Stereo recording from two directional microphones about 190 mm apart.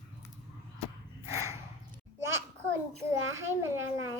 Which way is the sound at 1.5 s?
15° right (ahead or behind).